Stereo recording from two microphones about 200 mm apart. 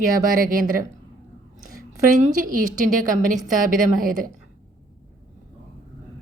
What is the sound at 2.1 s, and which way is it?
A woman's voice, 40° right (ahead or behind).